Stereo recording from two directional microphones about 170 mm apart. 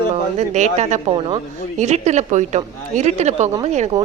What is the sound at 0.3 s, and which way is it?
A woman's voice, 45° right (ahead or behind).